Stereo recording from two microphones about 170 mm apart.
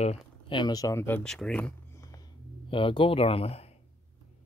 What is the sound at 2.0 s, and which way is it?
Music, 20° left (ahead or behind).